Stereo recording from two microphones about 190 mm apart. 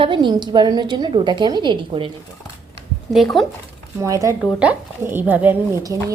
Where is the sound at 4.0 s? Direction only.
15° right (ahead or behind).